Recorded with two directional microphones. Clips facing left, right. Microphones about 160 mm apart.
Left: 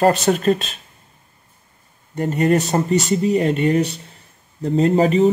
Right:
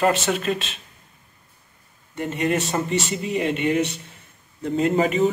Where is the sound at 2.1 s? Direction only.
40° left (ahead or behind).